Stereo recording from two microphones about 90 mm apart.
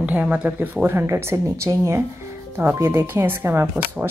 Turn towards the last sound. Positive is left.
turn(degrees=-25)  # may be behind; listen again after turning